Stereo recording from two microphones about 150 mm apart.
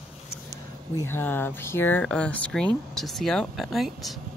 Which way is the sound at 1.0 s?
15° left (ahead or behind).